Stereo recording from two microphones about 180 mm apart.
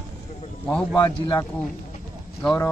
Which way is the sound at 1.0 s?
20° left (ahead or behind).